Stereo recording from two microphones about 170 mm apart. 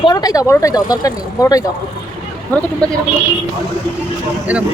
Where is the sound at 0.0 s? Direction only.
25° left (ahead or behind).